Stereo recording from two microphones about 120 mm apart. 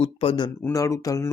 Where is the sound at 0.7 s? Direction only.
25° left (ahead or behind).